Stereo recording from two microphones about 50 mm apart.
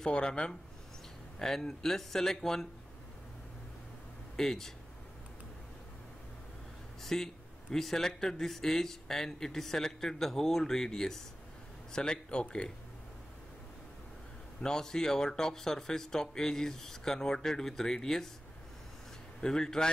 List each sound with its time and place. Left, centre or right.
0.0 s speech: centre
4.4 s speech: centre
7.0 s speech: centre
14.6 s speech: centre
19.4 s speech: centre